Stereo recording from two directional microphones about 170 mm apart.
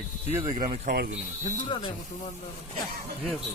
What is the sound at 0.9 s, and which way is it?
Speech, 65° right (ahead or behind).